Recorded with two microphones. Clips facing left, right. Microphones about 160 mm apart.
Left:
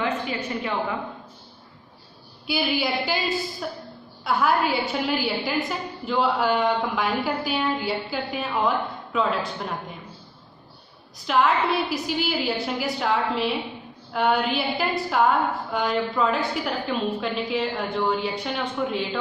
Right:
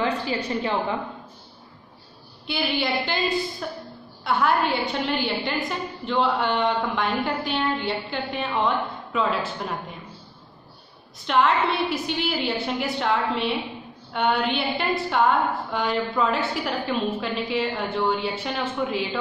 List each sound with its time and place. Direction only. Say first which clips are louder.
0.0 s a woman's voice: right 2 dB; 35° right (ahead or behind)
2.4 s a woman's voice: left 1 dB; 5° left (ahead or behind)
11.2 s a woman's voice: even; centre (ahead or behind)